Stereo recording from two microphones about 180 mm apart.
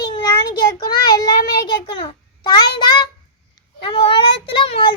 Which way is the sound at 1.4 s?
25° left (ahead or behind).